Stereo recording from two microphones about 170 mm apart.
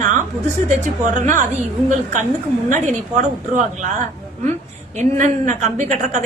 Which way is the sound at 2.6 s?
45° right (ahead or behind).